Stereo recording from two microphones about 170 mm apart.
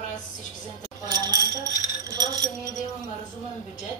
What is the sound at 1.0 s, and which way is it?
Speech, 25° right (ahead or behind).